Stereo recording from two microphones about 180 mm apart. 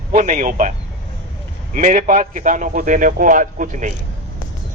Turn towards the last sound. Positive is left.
turn(degrees=-45)  # may be behind; listen again after turning